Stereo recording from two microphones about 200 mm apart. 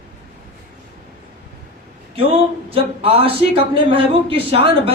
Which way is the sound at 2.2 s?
30° right (ahead or behind).